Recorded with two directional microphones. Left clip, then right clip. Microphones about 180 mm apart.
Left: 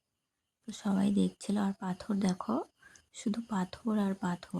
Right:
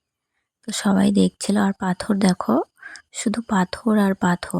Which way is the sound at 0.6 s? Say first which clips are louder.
Right 13 dB; 40° right (ahead or behind).